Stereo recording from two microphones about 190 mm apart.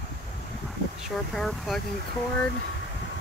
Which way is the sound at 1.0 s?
Centre (ahead or behind).